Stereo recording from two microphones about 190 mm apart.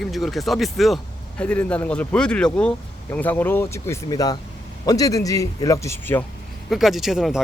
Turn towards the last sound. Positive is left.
turn(degrees=0)  # may be behind; listen again after turning